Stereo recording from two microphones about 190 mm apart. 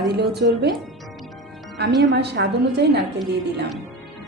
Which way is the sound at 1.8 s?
60° right (ahead or behind).